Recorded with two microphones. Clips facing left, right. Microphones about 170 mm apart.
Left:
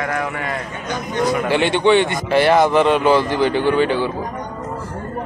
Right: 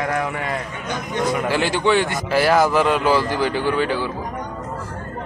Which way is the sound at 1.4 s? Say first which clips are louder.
Left 5 dB; centre (ahead or behind).